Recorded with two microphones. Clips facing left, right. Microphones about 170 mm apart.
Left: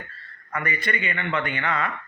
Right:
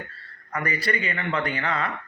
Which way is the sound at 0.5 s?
35° right (ahead or behind).